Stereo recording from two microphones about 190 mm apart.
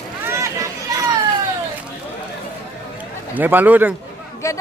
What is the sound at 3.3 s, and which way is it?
Speech, 10° right (ahead or behind).